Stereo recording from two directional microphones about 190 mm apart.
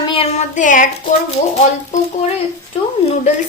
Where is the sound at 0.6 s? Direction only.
45° left (ahead or behind).